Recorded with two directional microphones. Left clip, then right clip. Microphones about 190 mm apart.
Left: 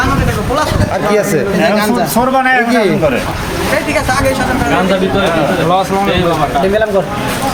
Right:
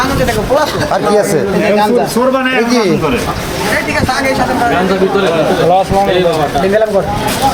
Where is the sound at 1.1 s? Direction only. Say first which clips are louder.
Right 1 dB; centre (ahead or behind).